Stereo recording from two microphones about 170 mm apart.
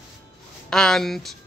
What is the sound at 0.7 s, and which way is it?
Speech, 5° left (ahead or behind).